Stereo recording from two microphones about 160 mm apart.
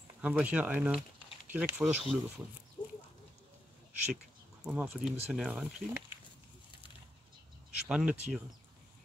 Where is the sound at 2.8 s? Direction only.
30° left (ahead or behind).